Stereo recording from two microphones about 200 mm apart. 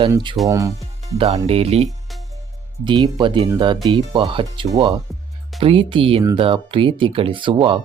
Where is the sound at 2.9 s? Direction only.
20° right (ahead or behind).